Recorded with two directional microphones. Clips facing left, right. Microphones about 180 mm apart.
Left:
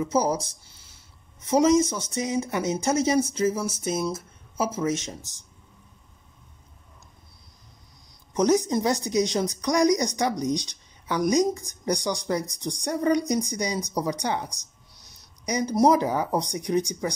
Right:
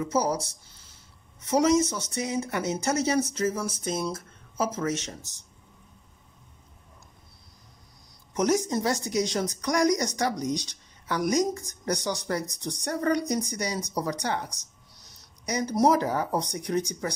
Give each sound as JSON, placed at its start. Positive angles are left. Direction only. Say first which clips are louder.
{"t": 1.5, "sound": "speech", "louder": "left 3 dB", "side_deg": 15}
{"t": 8.4, "sound": "speech", "louder": "left 3 dB", "side_deg": 20}